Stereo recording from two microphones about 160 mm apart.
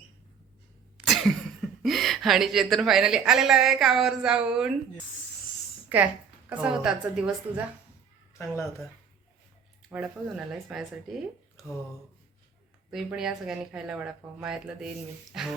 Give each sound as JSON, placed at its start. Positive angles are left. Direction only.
{"t": 1.0, "sound": "speech", "side_deg": 0}
{"t": 5.9, "sound": "a woman's voice", "side_deg": -10}
{"t": 8.3, "sound": "a sound", "side_deg": 15}
{"t": 9.9, "sound": "speech", "side_deg": -5}
{"t": 12.9, "sound": "speech", "side_deg": -5}